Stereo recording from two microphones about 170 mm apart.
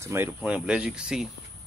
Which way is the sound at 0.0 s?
15° right (ahead or behind).